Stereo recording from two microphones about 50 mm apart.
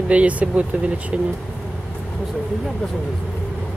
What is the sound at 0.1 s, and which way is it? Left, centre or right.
Speech, right.